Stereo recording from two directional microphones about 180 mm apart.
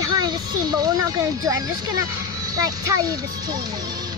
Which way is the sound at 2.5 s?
20° right (ahead or behind).